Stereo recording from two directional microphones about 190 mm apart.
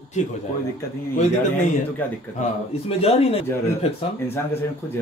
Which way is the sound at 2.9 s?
30° left (ahead or behind).